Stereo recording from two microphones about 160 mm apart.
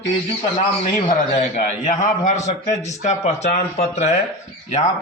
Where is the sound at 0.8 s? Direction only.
55° left (ahead or behind).